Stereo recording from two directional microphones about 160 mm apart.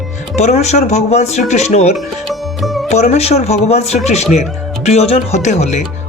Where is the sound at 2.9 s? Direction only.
45° left (ahead or behind).